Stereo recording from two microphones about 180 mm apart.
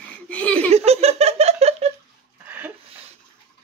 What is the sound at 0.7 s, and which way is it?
Giggle, 35° right (ahead or behind).